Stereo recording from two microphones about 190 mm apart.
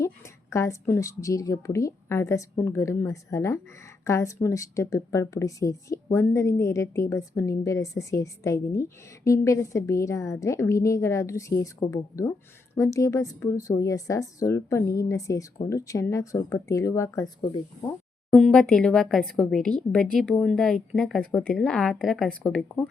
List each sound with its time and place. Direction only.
0.5 s speech: 15° left (ahead or behind)
18.3 s speech: 5° left (ahead or behind)